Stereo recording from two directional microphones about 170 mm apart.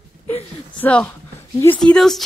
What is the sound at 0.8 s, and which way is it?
A woman's voice, 10° left (ahead or behind).